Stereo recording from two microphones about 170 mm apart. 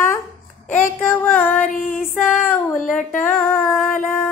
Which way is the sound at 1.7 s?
50° left (ahead or behind).